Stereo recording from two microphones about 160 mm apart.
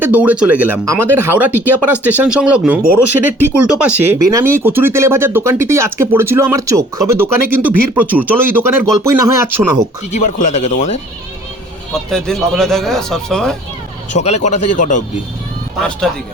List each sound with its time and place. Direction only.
0.0 s speech: 10° right (ahead or behind)
10.1 s speech: 50° left (ahead or behind)
12.1 s speech: 5° left (ahead or behind)
14.2 s speech: 45° left (ahead or behind)